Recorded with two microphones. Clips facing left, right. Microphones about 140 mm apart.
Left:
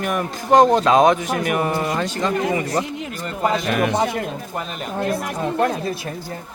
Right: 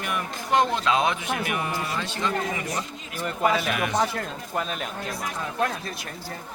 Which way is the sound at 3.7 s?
45° left (ahead or behind).